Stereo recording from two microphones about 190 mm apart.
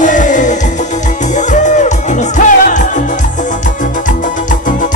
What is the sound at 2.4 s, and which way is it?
Music, 40° left (ahead or behind).